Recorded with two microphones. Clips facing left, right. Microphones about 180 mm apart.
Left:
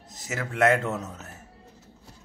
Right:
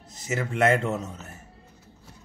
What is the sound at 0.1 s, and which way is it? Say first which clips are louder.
A man's voice: right 4 dB; centre (ahead or behind).